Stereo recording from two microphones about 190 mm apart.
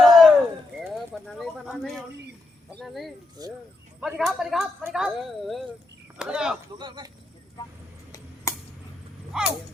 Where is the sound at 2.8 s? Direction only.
Centre (ahead or behind).